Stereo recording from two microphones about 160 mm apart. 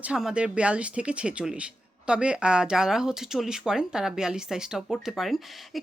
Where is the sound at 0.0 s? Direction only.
5° right (ahead or behind).